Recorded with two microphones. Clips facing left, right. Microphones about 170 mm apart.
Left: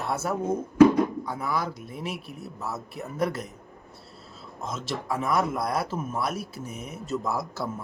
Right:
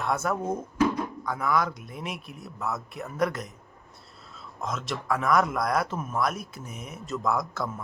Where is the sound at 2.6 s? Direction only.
30° left (ahead or behind).